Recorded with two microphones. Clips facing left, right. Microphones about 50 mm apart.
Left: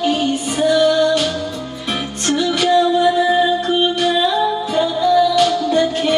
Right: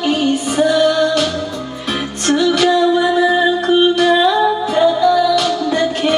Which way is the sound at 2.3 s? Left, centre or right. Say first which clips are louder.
Right 4 dB; right.